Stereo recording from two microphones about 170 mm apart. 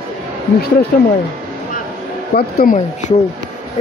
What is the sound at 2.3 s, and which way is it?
Speech, 50° left (ahead or behind).